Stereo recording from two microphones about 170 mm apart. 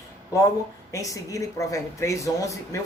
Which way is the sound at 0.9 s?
20° left (ahead or behind).